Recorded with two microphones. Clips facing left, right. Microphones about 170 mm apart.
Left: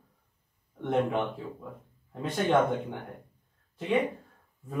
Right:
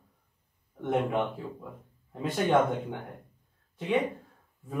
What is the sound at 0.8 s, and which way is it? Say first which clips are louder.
Speech: even; centre (ahead or behind).